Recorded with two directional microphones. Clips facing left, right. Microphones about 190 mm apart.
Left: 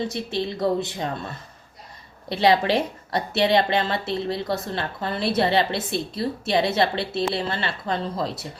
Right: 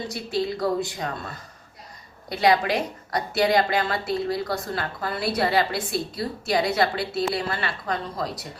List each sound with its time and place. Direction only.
0.1 s a woman's voice: 25° left (ahead or behind)